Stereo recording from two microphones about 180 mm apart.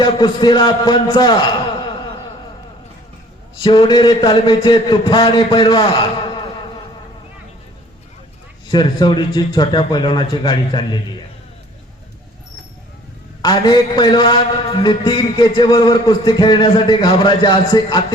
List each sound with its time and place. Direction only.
0.0 s a man's voice: 25° left (ahead or behind)
3.6 s a man's voice: 25° left (ahead or behind)
8.7 s a man's voice: 25° left (ahead or behind)
13.4 s a man's voice: 25° left (ahead or behind)